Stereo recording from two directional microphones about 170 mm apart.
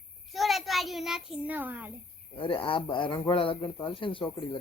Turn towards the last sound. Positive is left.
turn(degrees=30)  # may be behind; listen again after turning